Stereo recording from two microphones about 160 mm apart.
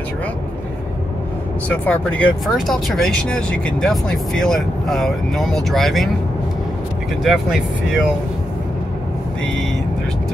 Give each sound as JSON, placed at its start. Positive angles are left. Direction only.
{"t": 1.7, "sound": "speech", "side_deg": 10}
{"t": 7.2, "sound": "speech", "side_deg": 0}